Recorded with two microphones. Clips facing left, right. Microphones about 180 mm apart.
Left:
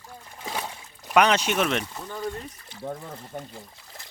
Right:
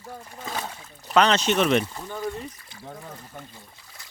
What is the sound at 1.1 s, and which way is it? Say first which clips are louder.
Speech: right 1 dB; 10° left (ahead or behind).